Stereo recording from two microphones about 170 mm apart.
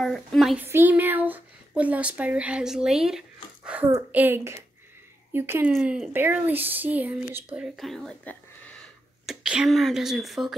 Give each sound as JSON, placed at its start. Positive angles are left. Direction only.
{"t": 0.0, "sound": "speech", "side_deg": 0}
{"t": 0.7, "sound": "speech", "side_deg": -10}